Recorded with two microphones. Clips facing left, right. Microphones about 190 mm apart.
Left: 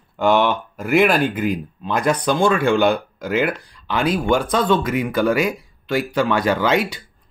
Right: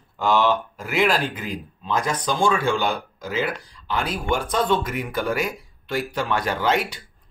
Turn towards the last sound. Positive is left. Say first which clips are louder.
# left 4 dB
turn(degrees=90)